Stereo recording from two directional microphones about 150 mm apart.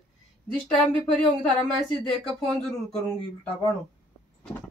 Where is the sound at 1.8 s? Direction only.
25° right (ahead or behind).